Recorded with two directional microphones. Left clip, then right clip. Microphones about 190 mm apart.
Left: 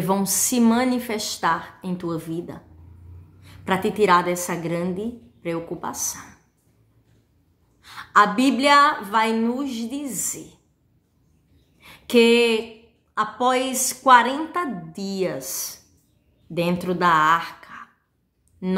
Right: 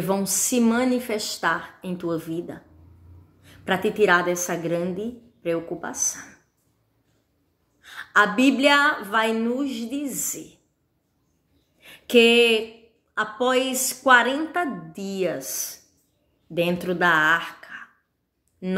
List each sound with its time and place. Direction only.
0.0 s a woman's voice: 15° left (ahead or behind)
7.8 s a woman's voice: 15° left (ahead or behind)
11.8 s a sound: 15° left (ahead or behind)
13.1 s a woman's voice: 15° left (ahead or behind)